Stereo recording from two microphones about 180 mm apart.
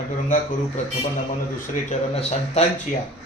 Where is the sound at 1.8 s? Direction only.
40° left (ahead or behind).